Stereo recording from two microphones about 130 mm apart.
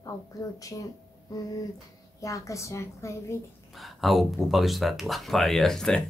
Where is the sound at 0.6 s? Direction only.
25° left (ahead or behind).